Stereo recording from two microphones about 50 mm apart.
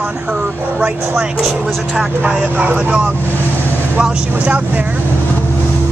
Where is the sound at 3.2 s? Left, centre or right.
Left.